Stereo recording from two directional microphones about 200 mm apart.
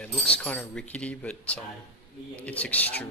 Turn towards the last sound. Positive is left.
turn(degrees=5)  # may be behind; listen again after turning